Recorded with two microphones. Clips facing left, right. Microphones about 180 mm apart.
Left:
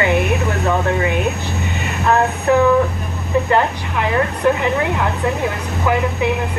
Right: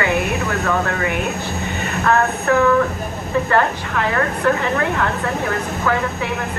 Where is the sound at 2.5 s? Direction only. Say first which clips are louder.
Left 2 dB; 20° left (ahead or behind).